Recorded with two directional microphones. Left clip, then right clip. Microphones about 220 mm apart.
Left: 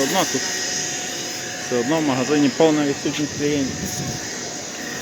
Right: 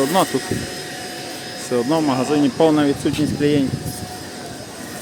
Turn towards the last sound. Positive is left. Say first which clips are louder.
# right 4 dB
turn(degrees=-30)  # may be behind; listen again after turning